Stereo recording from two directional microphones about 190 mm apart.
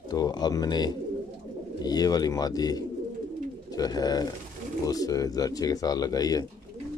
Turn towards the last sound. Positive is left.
turn(degrees=20)  # may be behind; listen again after turning